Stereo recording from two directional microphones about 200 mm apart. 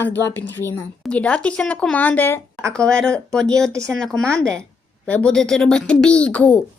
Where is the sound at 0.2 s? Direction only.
10° left (ahead or behind).